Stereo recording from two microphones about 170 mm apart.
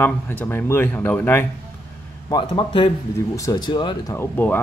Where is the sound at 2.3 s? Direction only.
30° left (ahead or behind).